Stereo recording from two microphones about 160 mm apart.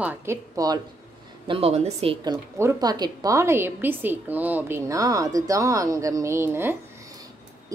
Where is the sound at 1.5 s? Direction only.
40° right (ahead or behind).